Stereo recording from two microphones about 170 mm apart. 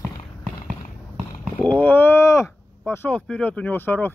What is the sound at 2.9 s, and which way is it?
Speech, 10° left (ahead or behind).